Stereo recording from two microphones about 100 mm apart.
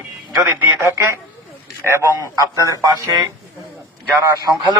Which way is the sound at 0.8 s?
30° right (ahead or behind).